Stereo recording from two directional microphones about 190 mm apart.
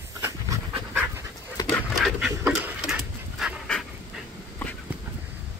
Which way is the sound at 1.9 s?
Centre (ahead or behind).